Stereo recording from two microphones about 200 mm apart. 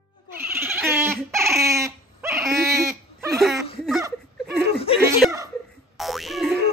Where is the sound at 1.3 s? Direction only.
15° right (ahead or behind).